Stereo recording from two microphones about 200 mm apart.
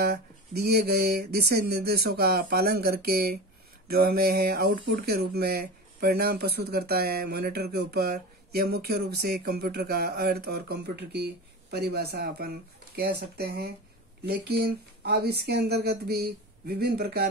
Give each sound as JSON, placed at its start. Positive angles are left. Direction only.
{"t": 0.0, "sound": "speech", "side_deg": -50}